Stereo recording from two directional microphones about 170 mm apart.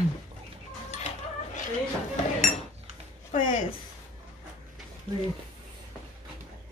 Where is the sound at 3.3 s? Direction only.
45° left (ahead or behind).